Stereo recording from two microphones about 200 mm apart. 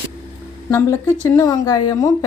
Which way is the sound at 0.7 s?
15° left (ahead or behind).